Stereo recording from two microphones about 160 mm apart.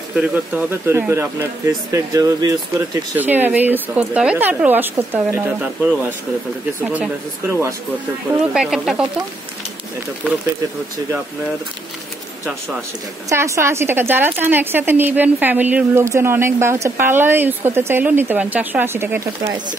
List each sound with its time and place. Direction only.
0.1 s a woman's voice: 10° right (ahead or behind)
3.2 s a woman's voice: 10° right (ahead or behind)
8.5 s speech: 5° right (ahead or behind)
13.3 s a woman's voice: 15° right (ahead or behind)